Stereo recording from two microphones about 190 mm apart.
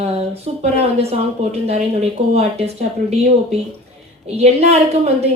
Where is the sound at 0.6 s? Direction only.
35° right (ahead or behind).